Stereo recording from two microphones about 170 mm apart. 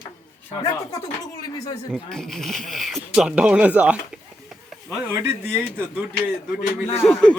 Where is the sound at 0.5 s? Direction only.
20° left (ahead or behind).